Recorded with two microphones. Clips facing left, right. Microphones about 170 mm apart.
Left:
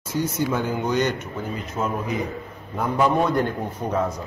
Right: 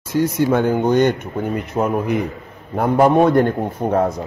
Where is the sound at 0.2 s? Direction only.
60° right (ahead or behind).